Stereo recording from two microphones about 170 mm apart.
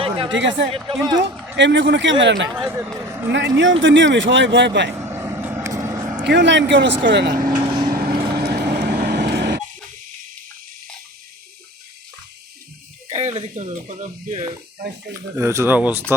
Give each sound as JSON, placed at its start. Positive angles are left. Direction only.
{"t": 0.0, "sound": "a sound", "side_deg": -30}
{"t": 0.3, "sound": "speech", "side_deg": -90}
{"t": 2.6, "sound": "speech", "side_deg": -15}
{"t": 3.6, "sound": "speech", "side_deg": -90}
{"t": 4.9, "sound": "vehicle", "side_deg": -15}
{"t": 6.2, "sound": "speech", "side_deg": -90}
{"t": 7.5, "sound": "vehicle", "side_deg": -25}
{"t": 7.9, "sound": "vehicle", "side_deg": -60}
{"t": 13.1, "sound": "speech", "side_deg": -45}
{"t": 15.4, "sound": "speech", "side_deg": -15}